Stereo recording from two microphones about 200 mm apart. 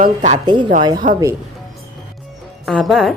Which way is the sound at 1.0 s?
40° right (ahead or behind).